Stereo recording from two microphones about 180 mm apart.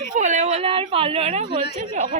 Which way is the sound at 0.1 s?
40° right (ahead or behind).